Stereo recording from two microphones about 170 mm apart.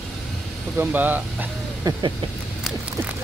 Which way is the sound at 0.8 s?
10° right (ahead or behind).